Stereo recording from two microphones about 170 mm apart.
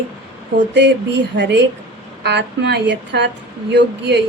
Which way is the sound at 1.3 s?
90° right.